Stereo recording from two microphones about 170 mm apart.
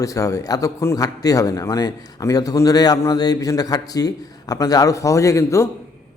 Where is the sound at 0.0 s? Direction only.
20° left (ahead or behind).